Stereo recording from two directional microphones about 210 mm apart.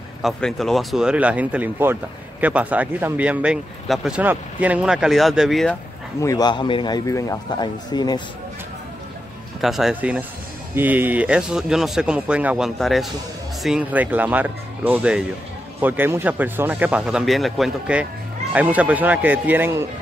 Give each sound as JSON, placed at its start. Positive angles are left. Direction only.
{"t": 0.2, "sound": "speech", "side_deg": 0}
{"t": 6.2, "sound": "a man's voice", "side_deg": 20}
{"t": 9.6, "sound": "speech", "side_deg": 0}